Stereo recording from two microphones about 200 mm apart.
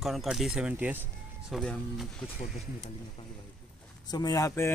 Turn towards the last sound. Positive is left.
turn(degrees=15)  # may be behind; listen again after turning